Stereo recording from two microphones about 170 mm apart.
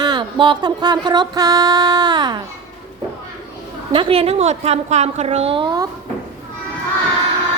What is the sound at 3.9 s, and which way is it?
A woman's voice, 35° right (ahead or behind).